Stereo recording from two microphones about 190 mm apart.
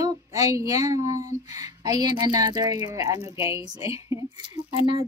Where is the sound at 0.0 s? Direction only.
20° right (ahead or behind).